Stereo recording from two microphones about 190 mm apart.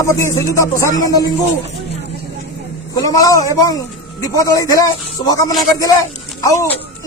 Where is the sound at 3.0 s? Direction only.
20° left (ahead or behind).